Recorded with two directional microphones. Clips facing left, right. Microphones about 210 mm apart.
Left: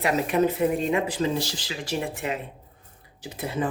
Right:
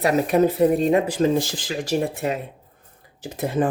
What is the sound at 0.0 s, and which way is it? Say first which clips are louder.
Speech: right 4 dB; 35° right (ahead or behind).